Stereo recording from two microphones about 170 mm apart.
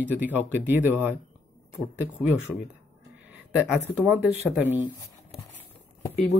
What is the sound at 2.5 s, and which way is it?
Speech, centre (ahead or behind).